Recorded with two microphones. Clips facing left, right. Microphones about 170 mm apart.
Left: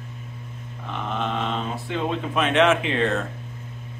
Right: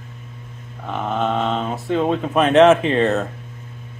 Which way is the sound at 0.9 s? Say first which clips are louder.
Right 6 dB; 40° right (ahead or behind).